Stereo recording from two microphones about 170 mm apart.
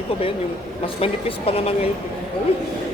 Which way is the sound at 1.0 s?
35° left (ahead or behind).